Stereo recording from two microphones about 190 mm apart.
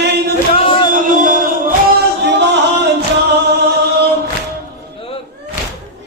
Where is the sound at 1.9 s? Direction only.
60° right (ahead or behind).